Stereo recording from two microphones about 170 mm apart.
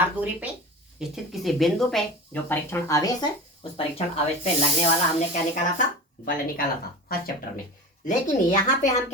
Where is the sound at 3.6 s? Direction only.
30° left (ahead or behind).